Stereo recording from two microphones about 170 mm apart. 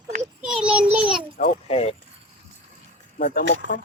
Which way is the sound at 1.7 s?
35° left (ahead or behind).